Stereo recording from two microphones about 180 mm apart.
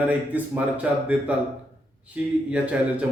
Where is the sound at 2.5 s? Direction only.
10° right (ahead or behind).